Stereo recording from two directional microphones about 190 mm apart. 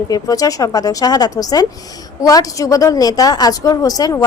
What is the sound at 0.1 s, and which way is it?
A woman's voice, 20° left (ahead or behind).